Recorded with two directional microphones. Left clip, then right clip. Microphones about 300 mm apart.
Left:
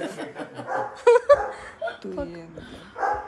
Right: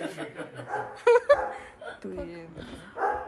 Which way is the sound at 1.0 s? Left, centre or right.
Centre.